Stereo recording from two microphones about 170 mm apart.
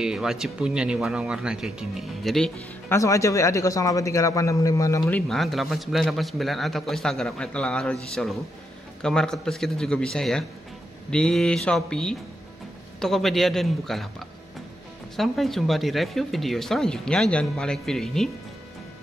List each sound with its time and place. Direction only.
0.0 s a man's voice: 5° right (ahead or behind)
2.9 s a man's voice: 20° left (ahead or behind)
5.0 s a man's voice: centre (ahead or behind)
15.1 s a man's voice: centre (ahead or behind)